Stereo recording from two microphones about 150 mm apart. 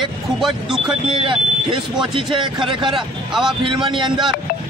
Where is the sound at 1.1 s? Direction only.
35° right (ahead or behind).